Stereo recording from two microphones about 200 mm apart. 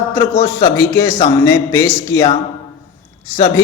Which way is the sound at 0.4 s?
15° left (ahead or behind).